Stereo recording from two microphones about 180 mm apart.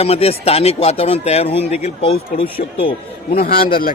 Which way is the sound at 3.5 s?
55° left (ahead or behind).